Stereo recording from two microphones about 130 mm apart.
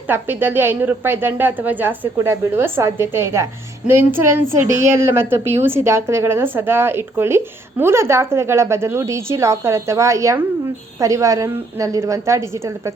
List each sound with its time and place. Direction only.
0.1 s a woman's voice: 15° right (ahead or behind)